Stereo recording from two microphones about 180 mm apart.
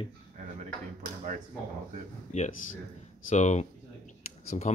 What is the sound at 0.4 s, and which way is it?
Drawer open or close, 40° right (ahead or behind).